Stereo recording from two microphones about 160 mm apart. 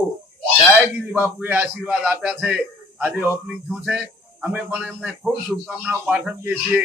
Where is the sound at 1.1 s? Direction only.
10° right (ahead or behind).